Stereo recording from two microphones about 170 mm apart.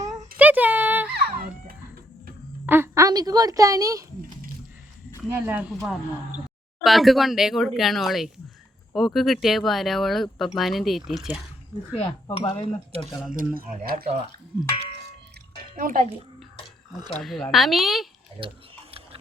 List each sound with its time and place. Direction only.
0.3 s a sound: 10° right (ahead or behind)
1.1 s baby cry: 65° right (ahead or behind)
2.6 s a woman's voice: 15° right (ahead or behind)
5.5 s speech: 10° right (ahead or behind)
6.8 s speech: centre (ahead or behind)
11.9 s cutlery: 35° left (ahead or behind)
13.0 s speech: 25° left (ahead or behind)
13.3 s speech: 55° right (ahead or behind)
15.7 s speech: 55° right (ahead or behind)
17.2 s speech: centre (ahead or behind)
18.3 s mechanisms: 30° right (ahead or behind)